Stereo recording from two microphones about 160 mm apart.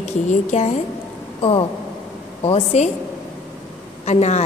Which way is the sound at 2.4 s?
40° left (ahead or behind).